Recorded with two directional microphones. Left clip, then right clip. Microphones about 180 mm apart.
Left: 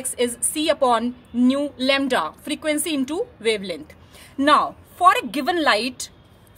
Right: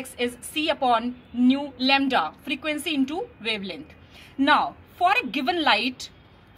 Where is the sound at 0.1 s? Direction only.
40° left (ahead or behind).